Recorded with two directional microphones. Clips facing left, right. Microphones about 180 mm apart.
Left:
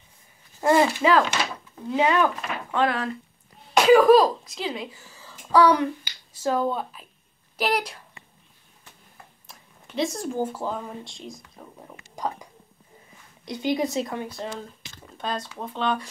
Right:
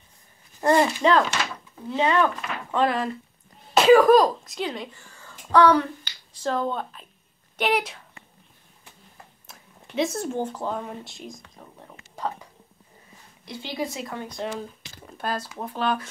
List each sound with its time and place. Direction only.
0.6 s speech: 5° left (ahead or behind)
2.7 s speech: centre (ahead or behind)
9.5 s a sound: centre (ahead or behind)
10.4 s speech: 5° left (ahead or behind)
13.5 s a woman's voice: 15° left (ahead or behind)
14.2 s speech: 5° left (ahead or behind)